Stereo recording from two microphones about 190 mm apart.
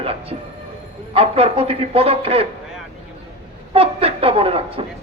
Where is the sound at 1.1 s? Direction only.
30° right (ahead or behind).